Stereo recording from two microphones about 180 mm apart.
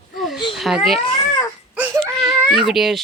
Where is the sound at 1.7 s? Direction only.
10° right (ahead or behind).